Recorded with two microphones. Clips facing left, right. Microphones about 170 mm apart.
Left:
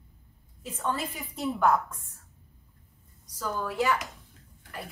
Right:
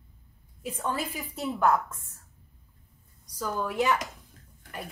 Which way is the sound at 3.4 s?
20° right (ahead or behind).